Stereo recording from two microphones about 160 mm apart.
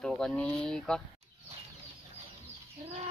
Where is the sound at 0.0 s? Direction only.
5° left (ahead or behind).